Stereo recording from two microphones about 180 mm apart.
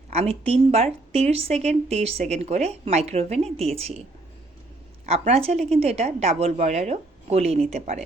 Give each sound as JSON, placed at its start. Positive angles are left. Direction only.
{"t": 0.1, "sound": "speech", "side_deg": -35}
{"t": 5.0, "sound": "speech", "side_deg": -35}